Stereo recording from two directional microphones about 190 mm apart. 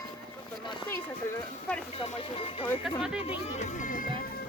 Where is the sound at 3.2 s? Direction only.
35° left (ahead or behind).